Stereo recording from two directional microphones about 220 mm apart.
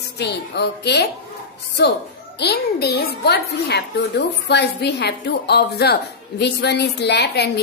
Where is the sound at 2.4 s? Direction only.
50° left (ahead or behind).